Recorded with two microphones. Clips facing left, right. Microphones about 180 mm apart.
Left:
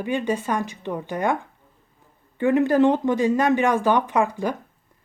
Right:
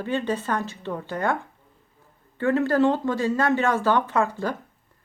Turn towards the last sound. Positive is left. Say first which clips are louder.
# left 2 dB
turn(degrees=15)  # may be behind; listen again after turning